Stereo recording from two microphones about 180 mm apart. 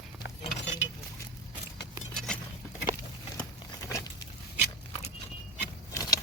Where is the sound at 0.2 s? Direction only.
85° left.